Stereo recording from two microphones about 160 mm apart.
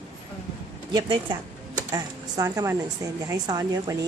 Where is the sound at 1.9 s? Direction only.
20° right (ahead or behind).